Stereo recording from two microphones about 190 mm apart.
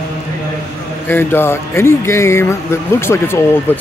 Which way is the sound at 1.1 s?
10° left (ahead or behind).